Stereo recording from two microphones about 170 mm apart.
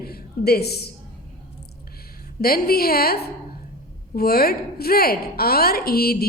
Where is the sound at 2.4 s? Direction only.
65° left (ahead or behind).